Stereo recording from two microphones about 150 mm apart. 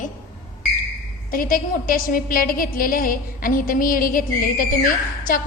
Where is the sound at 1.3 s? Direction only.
70° left (ahead or behind).